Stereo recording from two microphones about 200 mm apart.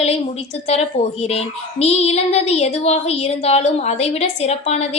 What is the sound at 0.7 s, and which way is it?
A child's voice, 30° left (ahead or behind).